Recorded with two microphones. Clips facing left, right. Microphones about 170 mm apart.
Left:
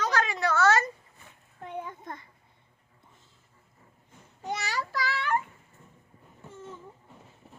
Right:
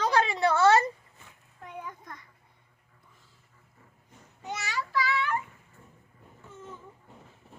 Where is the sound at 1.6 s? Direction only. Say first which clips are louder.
Left 4 dB; 30° left (ahead or behind).